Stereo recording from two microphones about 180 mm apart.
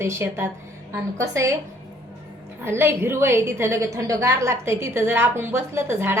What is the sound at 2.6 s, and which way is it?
A woman's voice, 15° right (ahead or behind).